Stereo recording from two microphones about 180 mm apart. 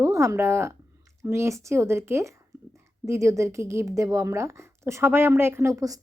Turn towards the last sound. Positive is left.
turn(degrees=-20)  # may be behind; listen again after turning